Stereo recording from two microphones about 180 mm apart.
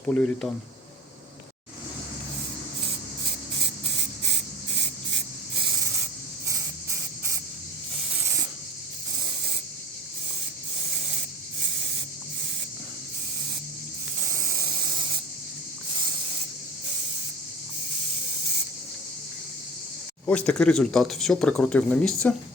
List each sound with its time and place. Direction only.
0.0 s speech: 5° left (ahead or behind)
14.3 s a sound: 15° right (ahead or behind)
20.2 s speech: 10° left (ahead or behind)